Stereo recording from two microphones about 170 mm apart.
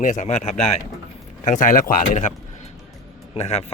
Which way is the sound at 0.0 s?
45° left (ahead or behind).